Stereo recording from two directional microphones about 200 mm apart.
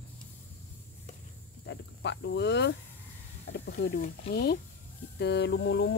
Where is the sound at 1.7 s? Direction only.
60° left (ahead or behind).